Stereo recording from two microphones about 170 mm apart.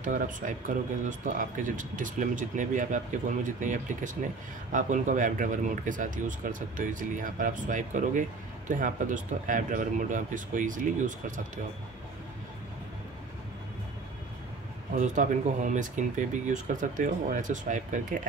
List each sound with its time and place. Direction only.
0.0 s speech: 50° right (ahead or behind)
15.0 s speech: 50° right (ahead or behind)